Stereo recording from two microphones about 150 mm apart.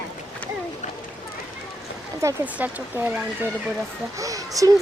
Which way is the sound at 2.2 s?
20° right (ahead or behind).